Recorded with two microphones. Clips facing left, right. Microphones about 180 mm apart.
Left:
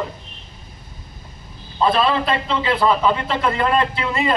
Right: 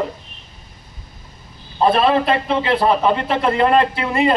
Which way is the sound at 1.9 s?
60° right (ahead or behind).